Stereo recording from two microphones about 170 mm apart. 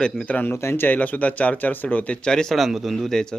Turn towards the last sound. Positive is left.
turn(degrees=5)  # may be behind; listen again after turning